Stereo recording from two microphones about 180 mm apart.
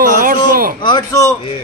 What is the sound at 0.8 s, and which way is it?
Speech, 20° left (ahead or behind).